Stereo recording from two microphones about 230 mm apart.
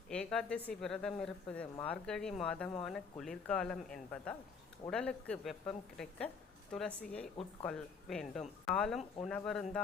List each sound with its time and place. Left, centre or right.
0.1 s a woman's voice: centre